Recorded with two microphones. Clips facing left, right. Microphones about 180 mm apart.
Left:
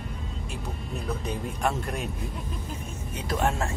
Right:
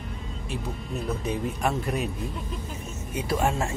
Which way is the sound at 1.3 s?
Centre (ahead or behind).